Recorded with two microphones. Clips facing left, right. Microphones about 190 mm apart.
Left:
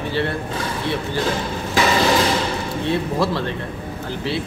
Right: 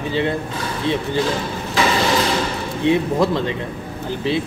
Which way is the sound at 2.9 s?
15° right (ahead or behind).